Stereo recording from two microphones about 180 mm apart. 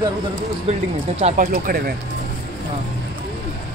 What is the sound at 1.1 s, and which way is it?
Speech, 40° right (ahead or behind).